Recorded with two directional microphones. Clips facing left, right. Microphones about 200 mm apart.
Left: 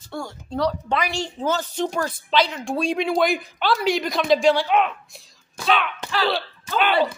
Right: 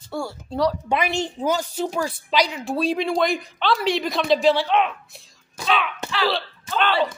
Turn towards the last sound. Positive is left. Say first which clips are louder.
# left 1 dB
turn(degrees=0)  # may be behind; listen again after turning